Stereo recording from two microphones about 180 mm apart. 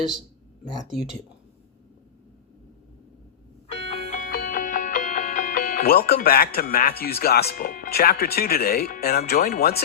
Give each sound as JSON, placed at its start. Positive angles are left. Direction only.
{"t": 3.7, "sound": "music", "side_deg": 30}
{"t": 4.3, "sound": "music", "side_deg": 55}
{"t": 7.0, "sound": "speech", "side_deg": 60}